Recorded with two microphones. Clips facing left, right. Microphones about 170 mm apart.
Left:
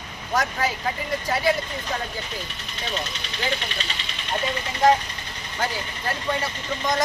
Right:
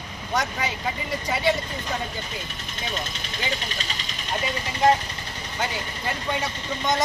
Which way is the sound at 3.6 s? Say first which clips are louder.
Left 1 dB; 40° right (ahead or behind).